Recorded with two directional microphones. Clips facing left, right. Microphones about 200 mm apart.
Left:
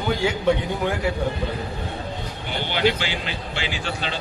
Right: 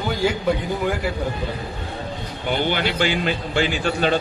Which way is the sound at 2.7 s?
50° right (ahead or behind).